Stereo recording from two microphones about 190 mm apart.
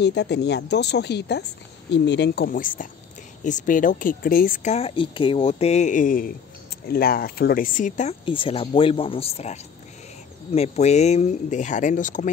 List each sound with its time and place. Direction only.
0.0 s speech: 65° left (ahead or behind)
4.7 s speech: 30° left (ahead or behind)
8.3 s speech: 25° left (ahead or behind)